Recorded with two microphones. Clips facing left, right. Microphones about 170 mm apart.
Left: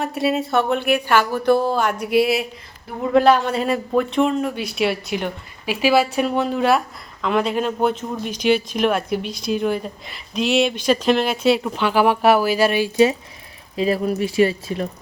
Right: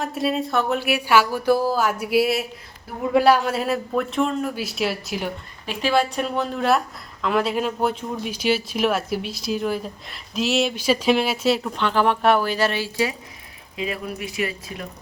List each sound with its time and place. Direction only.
0.0 s speech: centre (ahead or behind); by 13.1 s 20° left (ahead or behind)
13.7 s speech: 35° left (ahead or behind)